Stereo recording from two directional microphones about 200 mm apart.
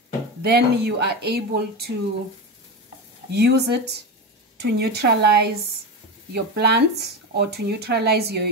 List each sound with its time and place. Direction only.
0.4 s speech: 55° right (ahead or behind)
3.3 s a woman's voice: 55° right (ahead or behind)